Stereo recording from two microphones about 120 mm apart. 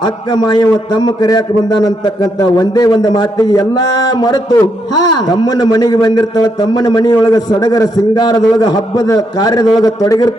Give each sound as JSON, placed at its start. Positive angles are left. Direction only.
{"t": 0.0, "sound": "a man's voice", "side_deg": 35}